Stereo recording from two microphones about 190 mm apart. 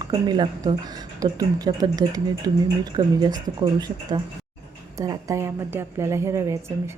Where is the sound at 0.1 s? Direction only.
20° right (ahead or behind).